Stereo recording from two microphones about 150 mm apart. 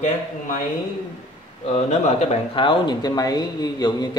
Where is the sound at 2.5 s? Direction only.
35° left (ahead or behind).